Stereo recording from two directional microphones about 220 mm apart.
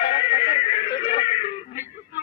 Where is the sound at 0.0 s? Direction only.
25° left (ahead or behind).